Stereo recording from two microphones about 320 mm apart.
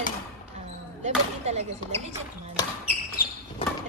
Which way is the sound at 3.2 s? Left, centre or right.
Left.